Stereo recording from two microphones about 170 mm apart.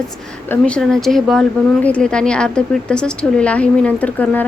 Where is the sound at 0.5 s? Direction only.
5° left (ahead or behind).